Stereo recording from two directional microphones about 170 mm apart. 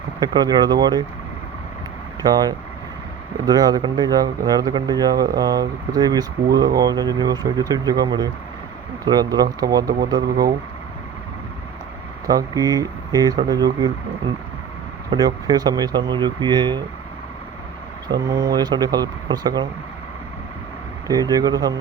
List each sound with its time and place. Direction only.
0.2 s speech: 25° right (ahead or behind)
2.2 s speech: 25° right (ahead or behind)
12.3 s speech: 20° right (ahead or behind)
15.1 s speech: 25° right (ahead or behind)
18.1 s speech: 20° right (ahead or behind)
21.1 s speech: 20° right (ahead or behind)